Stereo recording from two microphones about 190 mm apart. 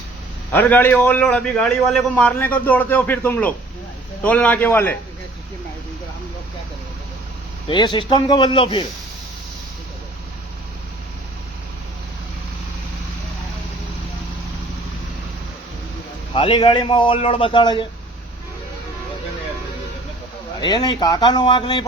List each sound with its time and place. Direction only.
0.5 s a man's voice: 10° left (ahead or behind)
7.7 s a man's voice: 25° left (ahead or behind)
16.3 s a man's voice: 25° left (ahead or behind)
20.6 s a man's voice: 25° left (ahead or behind)